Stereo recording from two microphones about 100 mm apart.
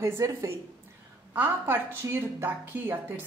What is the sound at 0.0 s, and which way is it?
A woman's voice, 25° right (ahead or behind).